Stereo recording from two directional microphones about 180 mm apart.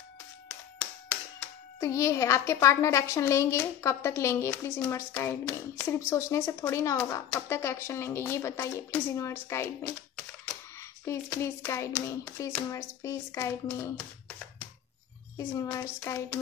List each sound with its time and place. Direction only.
1.8 s a woman's voice: 15° left (ahead or behind)
15.3 s a woman's voice: 15° left (ahead or behind)